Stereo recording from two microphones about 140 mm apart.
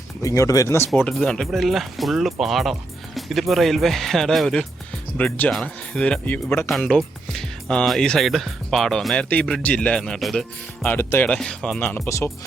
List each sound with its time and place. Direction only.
0.2 s speech: 25° left (ahead or behind)
0.9 s speech: 10° left (ahead or behind)
6.7 s speech: centre (ahead or behind)
10.8 s speech: 15° left (ahead or behind)
11.3 s speech: 5° left (ahead or behind)